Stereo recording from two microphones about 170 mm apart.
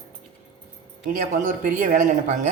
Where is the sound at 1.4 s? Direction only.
55° right (ahead or behind).